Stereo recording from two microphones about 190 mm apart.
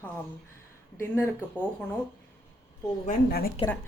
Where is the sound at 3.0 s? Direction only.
50° left (ahead or behind).